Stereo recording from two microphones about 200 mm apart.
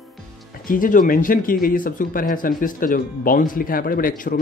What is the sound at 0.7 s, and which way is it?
Speech, 40° left (ahead or behind).